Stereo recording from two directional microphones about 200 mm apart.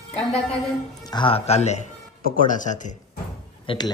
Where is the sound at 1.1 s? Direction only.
25° left (ahead or behind).